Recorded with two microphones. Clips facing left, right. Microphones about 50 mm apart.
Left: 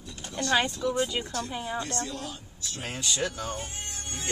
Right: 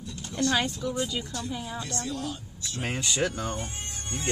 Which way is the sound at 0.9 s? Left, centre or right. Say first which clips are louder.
Left 2 dB; left.